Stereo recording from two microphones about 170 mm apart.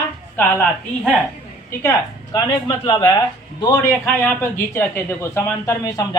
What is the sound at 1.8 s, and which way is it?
Speech, 20° left (ahead or behind).